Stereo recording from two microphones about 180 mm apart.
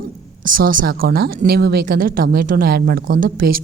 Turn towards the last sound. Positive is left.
turn(degrees=-55)  # may be behind; listen again after turning